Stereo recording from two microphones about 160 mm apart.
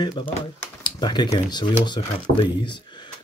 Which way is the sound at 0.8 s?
25° left (ahead or behind).